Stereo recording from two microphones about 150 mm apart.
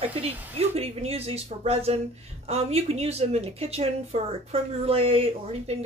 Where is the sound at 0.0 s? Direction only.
40° right (ahead or behind).